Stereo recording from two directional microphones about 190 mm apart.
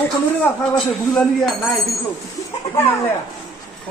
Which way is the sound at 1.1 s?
Centre (ahead or behind).